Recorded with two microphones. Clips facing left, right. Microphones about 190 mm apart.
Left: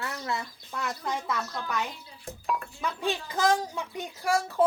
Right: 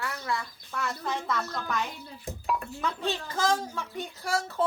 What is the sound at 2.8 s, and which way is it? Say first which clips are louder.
A woman's voice: even; 15° left (ahead or behind).